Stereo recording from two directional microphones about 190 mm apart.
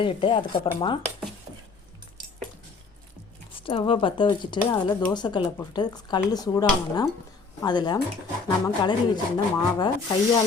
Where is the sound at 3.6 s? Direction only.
30° left (ahead or behind).